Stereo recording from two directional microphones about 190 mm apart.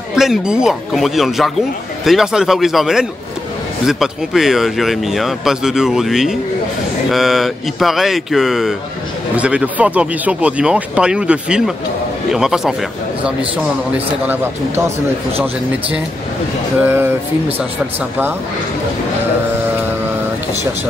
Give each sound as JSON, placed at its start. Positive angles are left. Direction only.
{"t": 0.1, "sound": "speech", "side_deg": -5}
{"t": 13.9, "sound": "speech", "side_deg": -10}